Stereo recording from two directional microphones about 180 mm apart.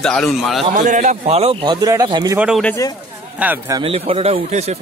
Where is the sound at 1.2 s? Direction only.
35° right (ahead or behind).